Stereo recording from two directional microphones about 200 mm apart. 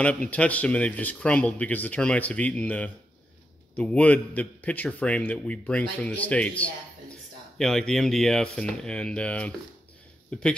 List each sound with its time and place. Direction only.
0.0 s speech: 5° left (ahead or behind)